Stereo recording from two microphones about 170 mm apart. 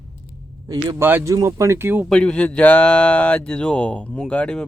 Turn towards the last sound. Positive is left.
turn(degrees=5)  # may be behind; listen again after turning